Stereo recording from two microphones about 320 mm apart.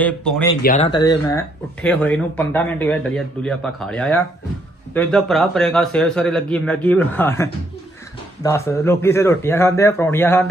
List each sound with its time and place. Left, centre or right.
0.0 s speech: centre
0.6 s speech: left
1.3 s speech: centre